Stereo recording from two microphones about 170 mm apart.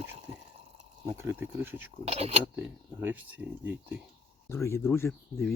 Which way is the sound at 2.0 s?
40° right (ahead or behind).